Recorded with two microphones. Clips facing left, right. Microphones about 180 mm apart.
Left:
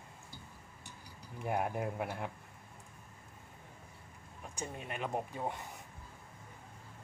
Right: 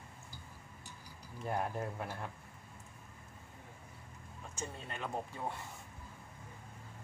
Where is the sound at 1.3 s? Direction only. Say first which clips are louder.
Left 2 dB; 15° left (ahead or behind).